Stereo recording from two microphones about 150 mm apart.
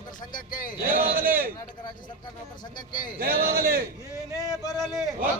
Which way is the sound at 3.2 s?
90° right.